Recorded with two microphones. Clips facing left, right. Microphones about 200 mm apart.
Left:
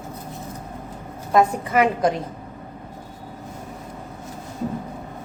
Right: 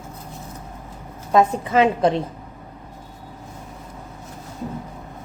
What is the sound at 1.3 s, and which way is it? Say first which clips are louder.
Speech: right 1 dB; 25° right (ahead or behind).